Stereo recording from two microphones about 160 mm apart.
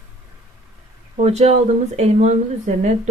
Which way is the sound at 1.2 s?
45° right (ahead or behind).